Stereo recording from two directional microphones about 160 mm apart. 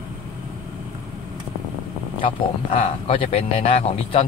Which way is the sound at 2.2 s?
40° left (ahead or behind).